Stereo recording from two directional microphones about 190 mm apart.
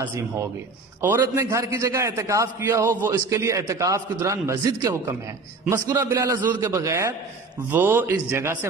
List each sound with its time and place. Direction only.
0.0 s a man's voice: 15° right (ahead or behind)